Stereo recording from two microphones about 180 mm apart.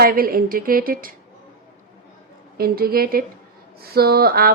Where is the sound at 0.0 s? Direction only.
55° right (ahead or behind).